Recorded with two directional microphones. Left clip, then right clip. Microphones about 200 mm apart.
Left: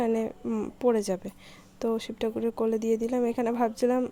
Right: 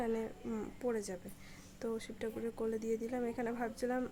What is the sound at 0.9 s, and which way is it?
Speech, 35° left (ahead or behind).